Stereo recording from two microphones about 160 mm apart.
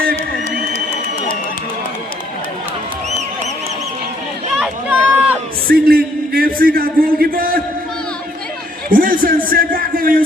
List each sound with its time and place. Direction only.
4.5 s a sound: 5° right (ahead or behind)
5.6 s a man's voice: 70° right (ahead or behind)
8.9 s a man's voice: 60° right (ahead or behind)